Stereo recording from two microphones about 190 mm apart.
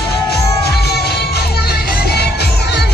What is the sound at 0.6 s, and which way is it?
Music, 55° left (ahead or behind).